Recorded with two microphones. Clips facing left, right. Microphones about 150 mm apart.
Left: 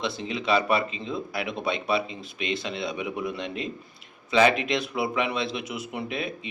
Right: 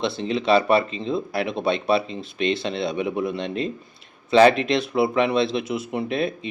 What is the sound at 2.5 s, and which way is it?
Speech, 30° right (ahead or behind).